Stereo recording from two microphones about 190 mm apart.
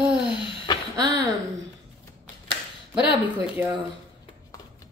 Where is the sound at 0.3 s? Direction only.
25° left (ahead or behind).